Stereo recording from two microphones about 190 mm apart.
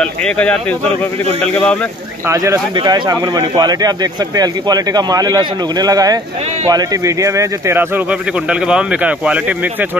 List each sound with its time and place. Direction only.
0.0 s speech: 5° left (ahead or behind)
2.2 s speech: 15° right (ahead or behind)